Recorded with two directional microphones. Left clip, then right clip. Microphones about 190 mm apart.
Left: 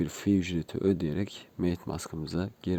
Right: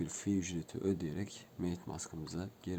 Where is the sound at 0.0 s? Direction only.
40° left (ahead or behind).